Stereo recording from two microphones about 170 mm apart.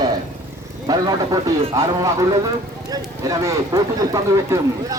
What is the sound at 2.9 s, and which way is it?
Speech, 20° right (ahead or behind).